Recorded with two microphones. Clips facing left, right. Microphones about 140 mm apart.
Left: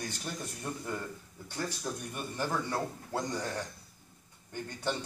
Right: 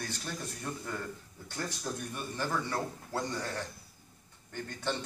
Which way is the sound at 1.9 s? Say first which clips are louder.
Even; 10° left (ahead or behind).